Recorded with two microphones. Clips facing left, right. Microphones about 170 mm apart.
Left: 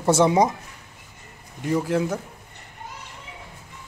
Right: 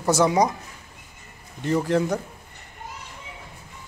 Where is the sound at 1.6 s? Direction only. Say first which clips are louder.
Right 1 dB; 5° left (ahead or behind).